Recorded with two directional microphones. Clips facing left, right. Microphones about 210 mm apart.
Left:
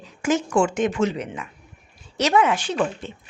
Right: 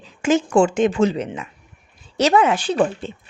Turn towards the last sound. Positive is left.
turn(degrees=-35)  # may be behind; listen again after turning